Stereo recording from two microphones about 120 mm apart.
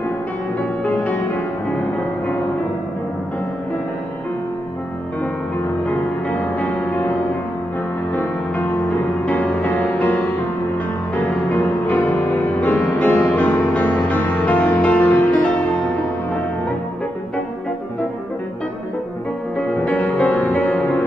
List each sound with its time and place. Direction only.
0.8 s music: 10° left (ahead or behind)
5.9 s music: 15° left (ahead or behind)
8.2 s music: 15° left (ahead or behind)
11.1 s music: 15° left (ahead or behind)
19.7 s music: 10° left (ahead or behind)